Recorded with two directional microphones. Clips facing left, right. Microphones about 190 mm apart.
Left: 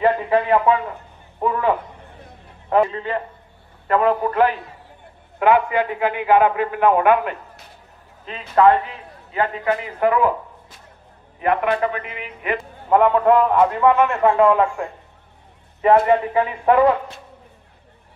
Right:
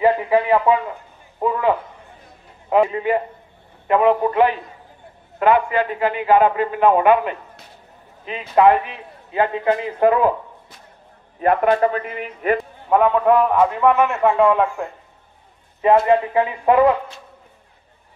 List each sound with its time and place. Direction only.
0.0 s a sound: 10° right (ahead or behind)
2.7 s a man's voice: 15° right (ahead or behind)
5.4 s a man's voice: 15° left (ahead or behind)
8.3 s a man's voice: 10° right (ahead or behind); by 10.3 s 25° right (ahead or behind)
11.4 s a man's voice: 35° right (ahead or behind)
12.9 s a man's voice: 10° right (ahead or behind)
15.8 s a man's voice: 15° right (ahead or behind)